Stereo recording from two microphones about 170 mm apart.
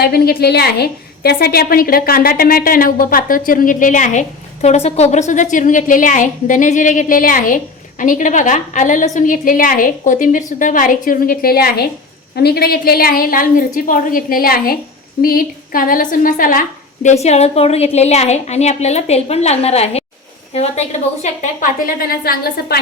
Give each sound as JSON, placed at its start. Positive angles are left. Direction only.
{"t": 0.0, "sound": "a woman's voice", "side_deg": 65}